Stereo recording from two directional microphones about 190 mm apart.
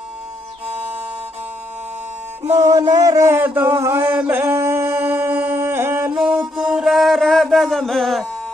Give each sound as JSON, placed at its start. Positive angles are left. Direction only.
{"t": 0.7, "sound": "music", "side_deg": -10}
{"t": 2.4, "sound": "music", "side_deg": -35}
{"t": 2.7, "sound": "a sound", "side_deg": -20}
{"t": 6.1, "sound": "music", "side_deg": -5}